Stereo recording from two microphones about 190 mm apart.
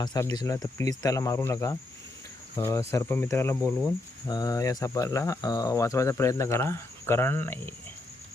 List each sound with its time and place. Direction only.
0.0 s speech: 20° left (ahead or behind)